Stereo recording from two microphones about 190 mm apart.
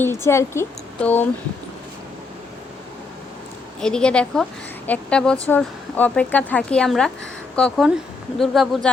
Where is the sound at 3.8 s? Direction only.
5° left (ahead or behind).